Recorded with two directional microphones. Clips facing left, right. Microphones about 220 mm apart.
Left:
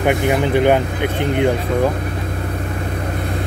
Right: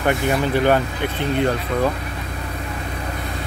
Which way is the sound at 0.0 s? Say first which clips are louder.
Left 3 dB; 15° left (ahead or behind).